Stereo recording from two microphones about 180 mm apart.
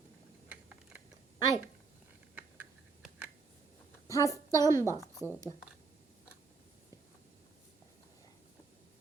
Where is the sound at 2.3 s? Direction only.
10° right (ahead or behind).